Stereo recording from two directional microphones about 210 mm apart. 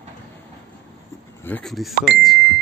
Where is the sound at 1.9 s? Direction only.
50° right (ahead or behind).